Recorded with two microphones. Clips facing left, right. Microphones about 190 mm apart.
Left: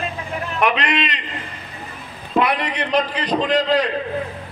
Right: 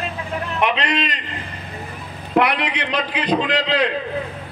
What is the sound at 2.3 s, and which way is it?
A man's voice, 70° right (ahead or behind).